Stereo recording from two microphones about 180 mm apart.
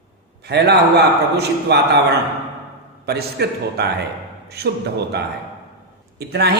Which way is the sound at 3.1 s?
65° right (ahead or behind).